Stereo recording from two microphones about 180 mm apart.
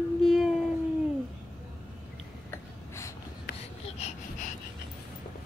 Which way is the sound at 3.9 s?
40° left (ahead or behind).